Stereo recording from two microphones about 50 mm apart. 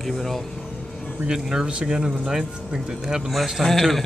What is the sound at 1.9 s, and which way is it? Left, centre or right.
Speech, centre.